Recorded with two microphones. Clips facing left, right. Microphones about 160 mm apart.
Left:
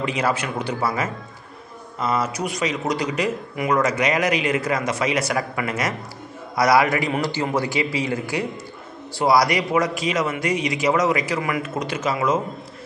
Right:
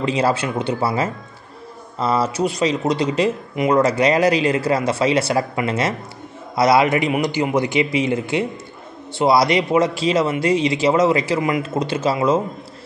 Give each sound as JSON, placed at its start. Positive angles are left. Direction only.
{"t": 0.0, "sound": "a man's voice", "side_deg": -30}